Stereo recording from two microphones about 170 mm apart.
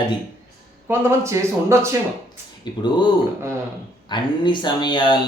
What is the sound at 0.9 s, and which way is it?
Speech, 15° right (ahead or behind).